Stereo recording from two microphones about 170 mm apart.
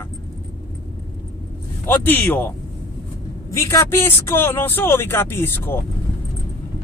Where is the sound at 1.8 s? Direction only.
10° left (ahead or behind).